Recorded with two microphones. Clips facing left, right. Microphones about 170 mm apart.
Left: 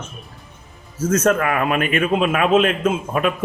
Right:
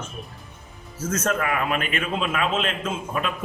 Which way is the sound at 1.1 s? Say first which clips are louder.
Left 7 dB; 55° left (ahead or behind).